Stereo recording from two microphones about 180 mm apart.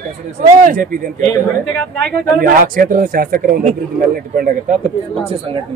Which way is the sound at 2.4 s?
50° right (ahead or behind).